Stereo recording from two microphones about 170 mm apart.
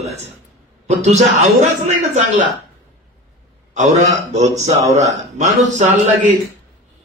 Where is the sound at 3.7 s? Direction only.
45° right (ahead or behind).